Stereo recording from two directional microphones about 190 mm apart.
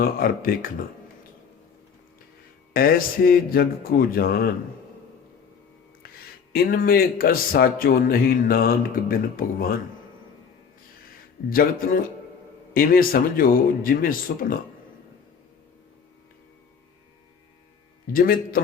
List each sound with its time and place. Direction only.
0.0 s speech: 50° left (ahead or behind)
2.7 s speech: 50° left (ahead or behind)
6.5 s speech: 55° left (ahead or behind)
11.4 s speech: 50° left (ahead or behind)
18.1 s speech: 50° left (ahead or behind)